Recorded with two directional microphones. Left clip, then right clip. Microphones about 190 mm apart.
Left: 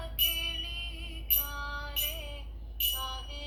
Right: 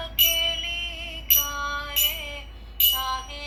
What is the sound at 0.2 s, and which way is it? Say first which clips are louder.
Music: right 9 dB; 35° right (ahead or behind).